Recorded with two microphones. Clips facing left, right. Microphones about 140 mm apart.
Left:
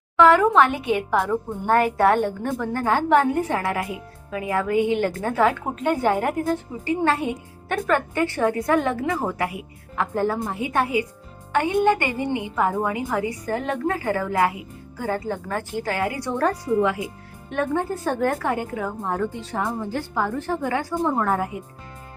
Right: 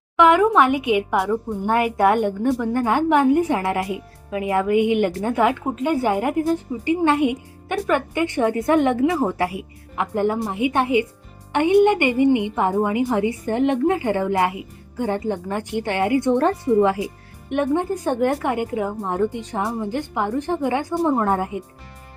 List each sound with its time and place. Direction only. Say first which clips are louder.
0.2 s a woman's voice: right 1 dB; 15° right (ahead or behind)
9.2 s a woman's voice: right 4 dB; 30° right (ahead or behind)
9.9 s a woman's voice: right 2 dB; 20° right (ahead or behind); by 17.1 s 35° right (ahead or behind)
17.5 s a woman's voice: right 3 dB; 20° right (ahead or behind)